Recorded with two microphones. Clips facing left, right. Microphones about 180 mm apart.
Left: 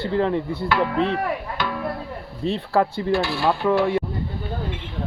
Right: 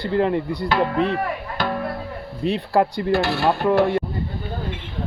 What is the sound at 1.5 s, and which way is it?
Music, 45° right (ahead or behind).